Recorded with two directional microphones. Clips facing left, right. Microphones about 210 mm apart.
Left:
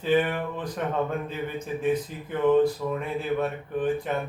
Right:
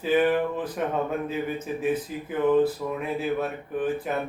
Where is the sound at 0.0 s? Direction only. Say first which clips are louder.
Right 2 dB; 5° right (ahead or behind).